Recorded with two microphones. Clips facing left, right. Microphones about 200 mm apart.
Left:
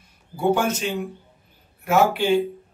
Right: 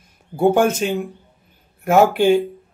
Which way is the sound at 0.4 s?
50° right (ahead or behind).